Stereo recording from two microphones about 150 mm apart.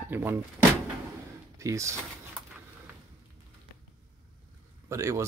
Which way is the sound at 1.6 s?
20° right (ahead or behind).